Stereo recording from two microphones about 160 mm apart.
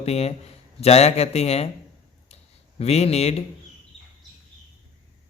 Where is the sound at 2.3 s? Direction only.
40° left (ahead or behind).